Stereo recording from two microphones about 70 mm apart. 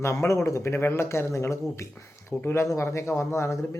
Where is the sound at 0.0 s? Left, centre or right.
Left.